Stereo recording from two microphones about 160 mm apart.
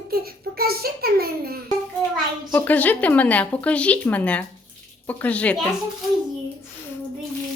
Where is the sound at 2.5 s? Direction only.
10° left (ahead or behind).